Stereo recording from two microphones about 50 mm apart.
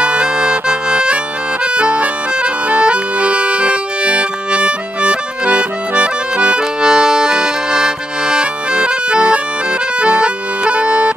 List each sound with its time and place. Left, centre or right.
0.0 s accordion: right